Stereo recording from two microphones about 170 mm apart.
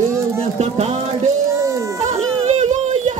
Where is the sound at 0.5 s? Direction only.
40° right (ahead or behind).